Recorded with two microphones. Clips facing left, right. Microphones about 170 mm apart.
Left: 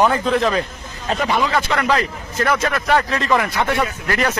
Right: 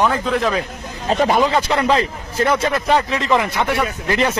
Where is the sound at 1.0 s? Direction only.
40° right (ahead or behind).